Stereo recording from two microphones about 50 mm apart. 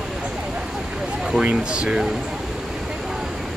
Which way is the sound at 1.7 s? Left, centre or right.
Centre.